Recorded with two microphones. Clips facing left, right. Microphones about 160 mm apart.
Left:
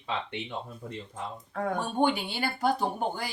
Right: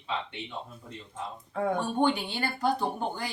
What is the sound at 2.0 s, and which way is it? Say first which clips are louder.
Speech: left 2 dB; 10° left (ahead or behind).